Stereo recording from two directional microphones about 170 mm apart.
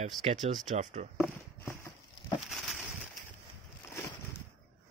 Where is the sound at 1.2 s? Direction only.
10° left (ahead or behind).